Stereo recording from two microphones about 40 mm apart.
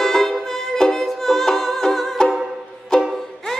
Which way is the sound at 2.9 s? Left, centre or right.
Centre.